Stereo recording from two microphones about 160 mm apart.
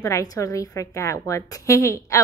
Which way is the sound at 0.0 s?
20° left (ahead or behind).